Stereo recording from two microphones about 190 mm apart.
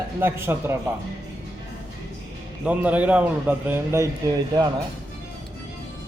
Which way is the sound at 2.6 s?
10° right (ahead or behind).